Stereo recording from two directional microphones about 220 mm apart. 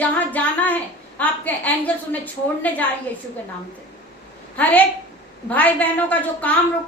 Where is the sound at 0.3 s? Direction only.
5° left (ahead or behind).